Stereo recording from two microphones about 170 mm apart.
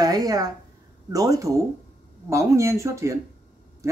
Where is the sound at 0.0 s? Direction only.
20° right (ahead or behind).